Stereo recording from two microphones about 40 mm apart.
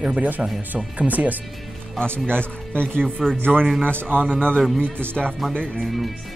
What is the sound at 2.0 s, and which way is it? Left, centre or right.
Speech, left.